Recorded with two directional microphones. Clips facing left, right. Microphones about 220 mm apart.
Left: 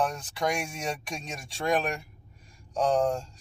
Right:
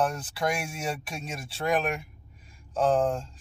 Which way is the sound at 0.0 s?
5° right (ahead or behind).